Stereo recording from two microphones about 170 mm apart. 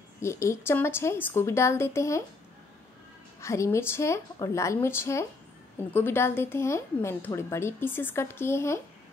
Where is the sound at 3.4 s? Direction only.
15° left (ahead or behind).